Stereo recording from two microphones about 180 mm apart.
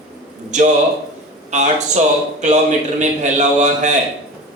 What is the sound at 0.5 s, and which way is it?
A man's voice, 40° right (ahead or behind).